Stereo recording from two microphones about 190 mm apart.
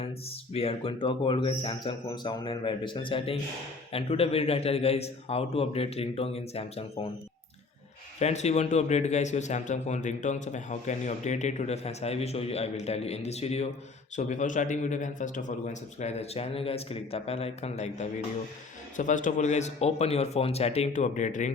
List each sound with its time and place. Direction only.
0.0 s a man's voice: 30° left (ahead or behind)
8.2 s a man's voice: 35° left (ahead or behind)